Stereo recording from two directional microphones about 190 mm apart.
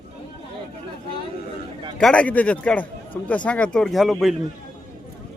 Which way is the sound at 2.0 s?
5° left (ahead or behind).